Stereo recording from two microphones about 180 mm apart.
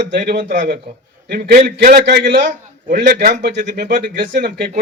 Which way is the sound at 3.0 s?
45° right (ahead or behind).